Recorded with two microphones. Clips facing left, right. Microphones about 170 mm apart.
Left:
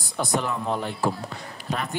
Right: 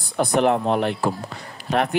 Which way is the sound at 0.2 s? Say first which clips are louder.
Right 8 dB; 65° right (ahead or behind).